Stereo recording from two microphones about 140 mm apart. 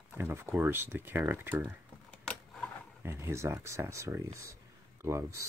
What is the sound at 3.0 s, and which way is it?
Speech, 20° right (ahead or behind).